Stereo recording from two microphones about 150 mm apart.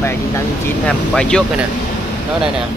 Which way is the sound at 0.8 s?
5° left (ahead or behind).